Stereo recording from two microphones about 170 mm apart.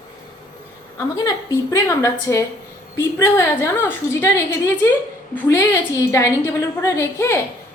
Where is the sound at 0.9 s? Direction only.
20° left (ahead or behind).